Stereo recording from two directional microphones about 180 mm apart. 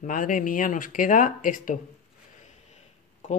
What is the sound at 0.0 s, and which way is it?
Speech, 50° left (ahead or behind).